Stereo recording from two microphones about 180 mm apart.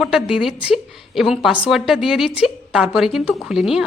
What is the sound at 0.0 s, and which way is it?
A woman's voice, centre (ahead or behind).